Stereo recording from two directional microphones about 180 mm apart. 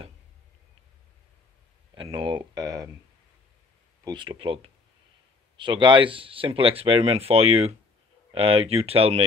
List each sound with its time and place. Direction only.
2.0 s speech: 25° right (ahead or behind)
4.0 s speech: 25° right (ahead or behind)
5.6 s speech: 25° right (ahead or behind)